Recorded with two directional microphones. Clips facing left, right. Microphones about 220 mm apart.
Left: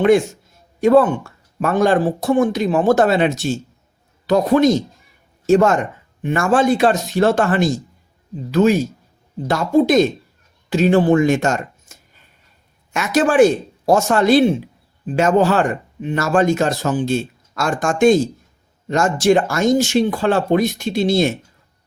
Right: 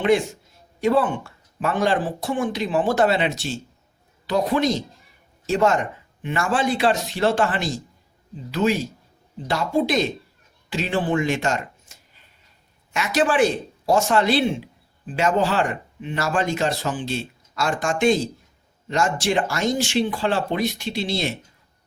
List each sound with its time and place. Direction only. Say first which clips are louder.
0.0 s speech: left 6 dB; 45° left (ahead or behind)